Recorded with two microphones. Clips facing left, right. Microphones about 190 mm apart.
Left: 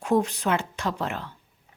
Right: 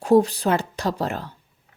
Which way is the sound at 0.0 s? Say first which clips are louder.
Right 6 dB; 35° right (ahead or behind).